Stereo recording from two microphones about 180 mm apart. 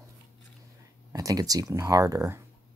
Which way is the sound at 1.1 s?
20° right (ahead or behind).